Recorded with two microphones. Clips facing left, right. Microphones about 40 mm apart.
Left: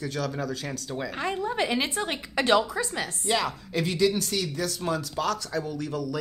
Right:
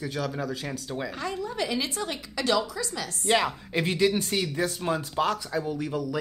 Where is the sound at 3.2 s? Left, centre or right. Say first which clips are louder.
Right 4 dB; right.